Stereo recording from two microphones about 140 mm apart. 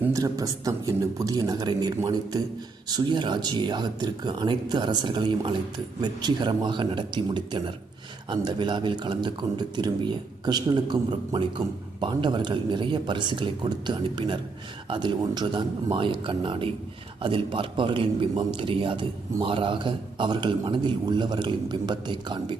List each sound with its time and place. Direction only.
0.0 s a man's voice: 25° right (ahead or behind)